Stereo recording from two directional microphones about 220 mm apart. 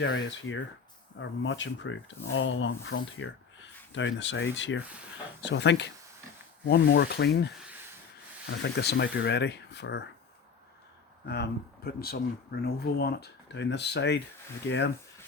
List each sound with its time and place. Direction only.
0.0 s speech: 55° left (ahead or behind)
11.3 s speech: 45° left (ahead or behind)